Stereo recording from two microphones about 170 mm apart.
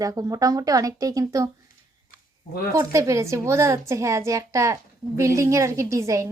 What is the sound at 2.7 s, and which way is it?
A woman's voice, 20° right (ahead or behind).